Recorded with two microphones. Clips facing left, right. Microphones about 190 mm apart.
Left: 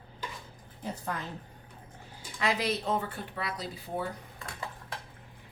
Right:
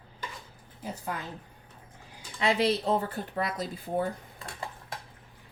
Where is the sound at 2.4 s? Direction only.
25° right (ahead or behind); by 3.9 s 50° right (ahead or behind).